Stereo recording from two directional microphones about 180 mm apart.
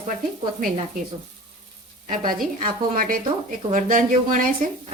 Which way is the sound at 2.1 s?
50° right (ahead or behind).